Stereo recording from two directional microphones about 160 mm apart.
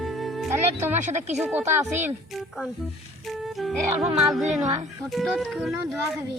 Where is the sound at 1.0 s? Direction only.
45° right (ahead or behind).